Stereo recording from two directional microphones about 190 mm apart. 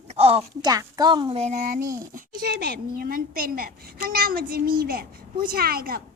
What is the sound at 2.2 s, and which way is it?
A woman's voice, 55° right (ahead or behind).